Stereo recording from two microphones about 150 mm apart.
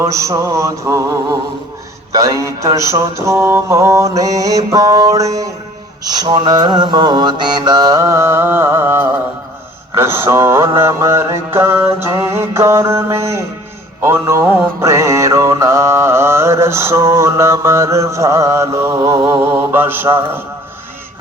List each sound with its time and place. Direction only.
0.0 s mantra: 20° right (ahead or behind)